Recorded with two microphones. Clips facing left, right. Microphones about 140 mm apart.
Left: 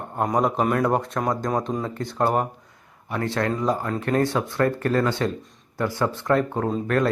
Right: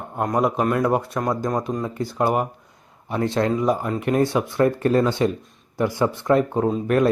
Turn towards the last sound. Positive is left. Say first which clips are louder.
# right 3 dB
turn(degrees=-15)  # may be behind; listen again after turning